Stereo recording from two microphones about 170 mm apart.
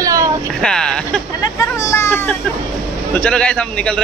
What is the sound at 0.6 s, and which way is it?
Speech, 5° left (ahead or behind).